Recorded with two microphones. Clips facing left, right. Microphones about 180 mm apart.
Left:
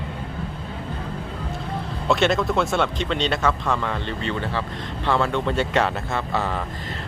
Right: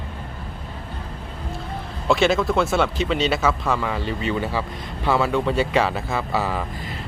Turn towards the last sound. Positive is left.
turn(degrees=-5)  # may be behind; listen again after turning